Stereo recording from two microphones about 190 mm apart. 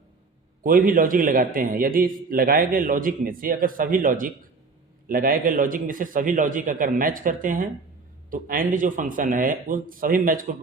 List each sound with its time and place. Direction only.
0.6 s a man's voice: 45° right (ahead or behind)